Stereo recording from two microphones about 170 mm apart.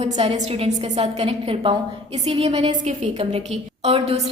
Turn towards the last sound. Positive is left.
turn(degrees=-35)  # may be behind; listen again after turning